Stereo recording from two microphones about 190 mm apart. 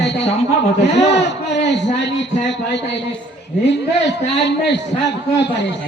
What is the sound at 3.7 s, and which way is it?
A man's voice, 65° left (ahead or behind).